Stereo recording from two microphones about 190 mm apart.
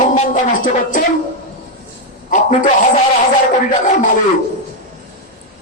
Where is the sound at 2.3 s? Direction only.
45° left (ahead or behind).